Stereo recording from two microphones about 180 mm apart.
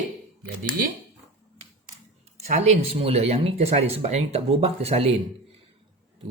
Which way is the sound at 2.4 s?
40° right (ahead or behind).